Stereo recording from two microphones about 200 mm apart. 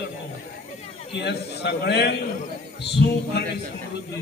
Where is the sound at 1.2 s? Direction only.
55° left (ahead or behind).